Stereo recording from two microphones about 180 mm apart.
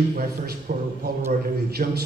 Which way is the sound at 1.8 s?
50° right (ahead or behind).